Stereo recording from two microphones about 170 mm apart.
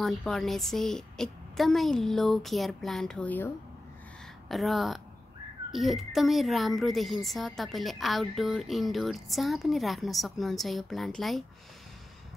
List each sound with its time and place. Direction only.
0.0 s speech: centre (ahead or behind)
4.5 s speech: centre (ahead or behind)